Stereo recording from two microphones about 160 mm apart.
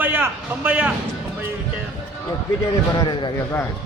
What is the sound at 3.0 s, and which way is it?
Speech, 30° left (ahead or behind).